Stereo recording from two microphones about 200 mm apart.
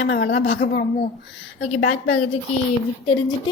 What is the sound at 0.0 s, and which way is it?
Speech, 60° left (ahead or behind).